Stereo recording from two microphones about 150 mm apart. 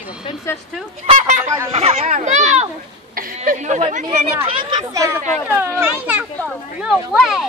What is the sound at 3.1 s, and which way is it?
A woman's voice, 65° right (ahead or behind).